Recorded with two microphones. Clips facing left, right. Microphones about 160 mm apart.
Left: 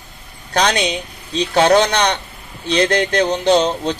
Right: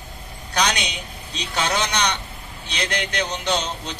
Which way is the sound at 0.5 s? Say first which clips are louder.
Left 7 dB; 50° left (ahead or behind).